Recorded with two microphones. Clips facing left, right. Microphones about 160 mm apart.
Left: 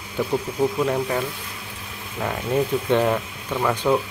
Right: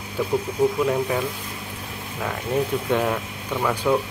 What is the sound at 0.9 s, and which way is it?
Speech, 5° right (ahead or behind).